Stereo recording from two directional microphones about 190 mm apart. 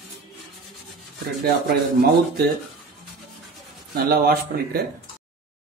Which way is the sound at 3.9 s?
55° right (ahead or behind).